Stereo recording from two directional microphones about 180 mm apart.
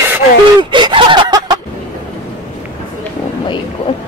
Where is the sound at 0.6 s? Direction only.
25° right (ahead or behind).